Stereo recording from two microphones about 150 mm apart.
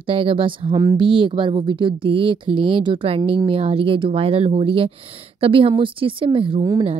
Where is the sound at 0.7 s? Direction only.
25° right (ahead or behind).